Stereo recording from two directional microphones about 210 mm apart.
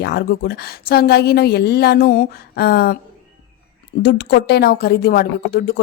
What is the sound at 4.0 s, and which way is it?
A woman's voice, 55° left (ahead or behind).